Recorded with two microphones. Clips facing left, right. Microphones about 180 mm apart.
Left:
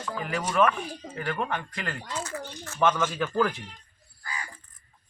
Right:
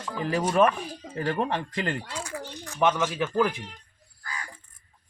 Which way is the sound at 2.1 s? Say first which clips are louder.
Left 1 dB; 10° right (ahead or behind).